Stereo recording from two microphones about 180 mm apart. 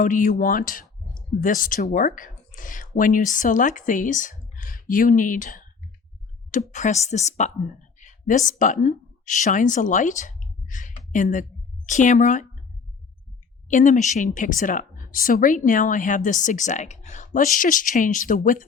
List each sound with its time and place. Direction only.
0.0 s a woman's voice: 45° left (ahead or behind)
13.7 s a woman's voice: 45° left (ahead or behind)